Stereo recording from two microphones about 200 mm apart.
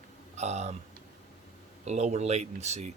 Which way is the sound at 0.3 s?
35° right (ahead or behind).